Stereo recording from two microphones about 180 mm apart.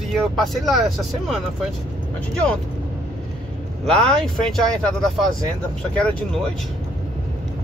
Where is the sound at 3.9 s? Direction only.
5° left (ahead or behind).